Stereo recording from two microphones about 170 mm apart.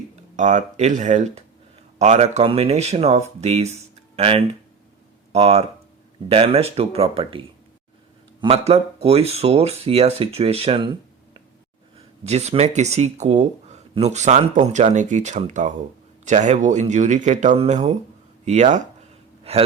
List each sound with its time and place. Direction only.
0.3 s speech: 45° right (ahead or behind)
11.9 s speech: 40° right (ahead or behind)